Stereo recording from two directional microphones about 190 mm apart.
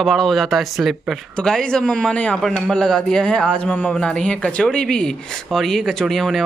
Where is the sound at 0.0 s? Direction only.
Centre (ahead or behind).